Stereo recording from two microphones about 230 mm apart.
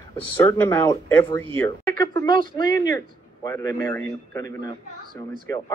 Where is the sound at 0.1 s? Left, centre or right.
Centre.